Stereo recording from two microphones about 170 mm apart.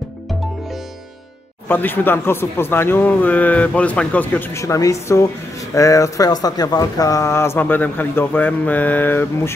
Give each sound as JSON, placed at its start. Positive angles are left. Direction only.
{"t": 1.7, "sound": "speech", "side_deg": 10}